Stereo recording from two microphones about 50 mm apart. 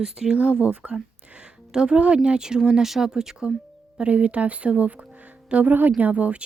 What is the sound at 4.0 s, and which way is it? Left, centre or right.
A woman's voice, right.